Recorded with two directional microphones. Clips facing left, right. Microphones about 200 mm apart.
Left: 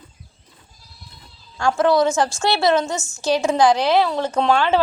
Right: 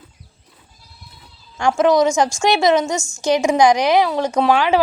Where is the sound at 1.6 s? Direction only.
15° right (ahead or behind).